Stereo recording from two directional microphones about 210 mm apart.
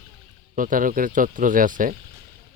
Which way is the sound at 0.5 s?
40° right (ahead or behind).